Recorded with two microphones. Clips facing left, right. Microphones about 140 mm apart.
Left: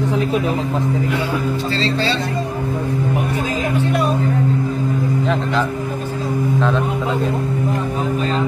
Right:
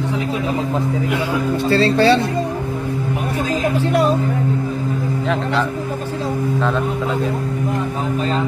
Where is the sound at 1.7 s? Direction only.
55° right (ahead or behind).